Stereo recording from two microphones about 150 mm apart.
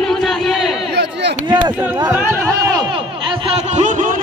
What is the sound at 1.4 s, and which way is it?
Speech, 30° right (ahead or behind).